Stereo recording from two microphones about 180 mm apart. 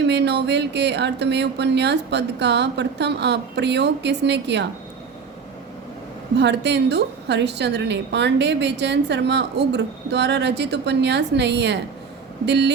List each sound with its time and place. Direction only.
0.0 s a woman's voice: 70° right (ahead or behind)
6.3 s a woman's voice: 70° right (ahead or behind)